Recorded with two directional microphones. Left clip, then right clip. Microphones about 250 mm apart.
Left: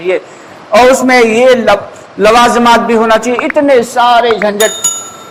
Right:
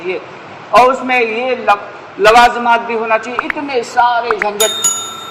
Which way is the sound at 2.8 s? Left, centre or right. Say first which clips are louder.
Left 7 dB; left.